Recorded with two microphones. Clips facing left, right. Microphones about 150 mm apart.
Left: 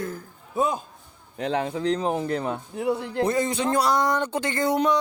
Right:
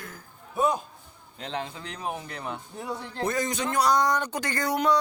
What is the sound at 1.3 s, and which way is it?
Speech, 65° left (ahead or behind).